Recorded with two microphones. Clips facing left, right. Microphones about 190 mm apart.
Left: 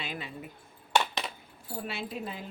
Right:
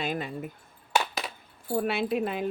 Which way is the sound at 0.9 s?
5° right (ahead or behind).